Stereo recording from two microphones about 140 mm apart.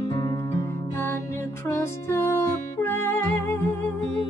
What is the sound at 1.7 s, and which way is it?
Music, 20° left (ahead or behind).